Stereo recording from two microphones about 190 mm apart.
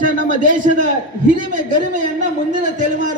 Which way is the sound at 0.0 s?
45° right (ahead or behind).